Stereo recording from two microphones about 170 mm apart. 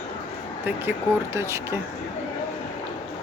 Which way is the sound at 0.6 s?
15° right (ahead or behind).